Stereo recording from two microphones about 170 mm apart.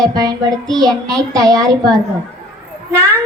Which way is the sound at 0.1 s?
25° right (ahead or behind).